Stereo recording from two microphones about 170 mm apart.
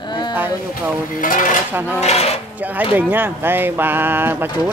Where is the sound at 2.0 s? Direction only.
40° left (ahead or behind).